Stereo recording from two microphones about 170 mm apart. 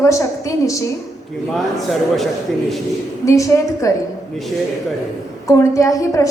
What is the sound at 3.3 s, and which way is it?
Speech, 20° left (ahead or behind).